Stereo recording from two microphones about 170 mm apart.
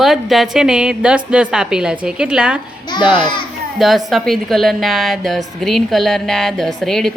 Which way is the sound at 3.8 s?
Centre (ahead or behind).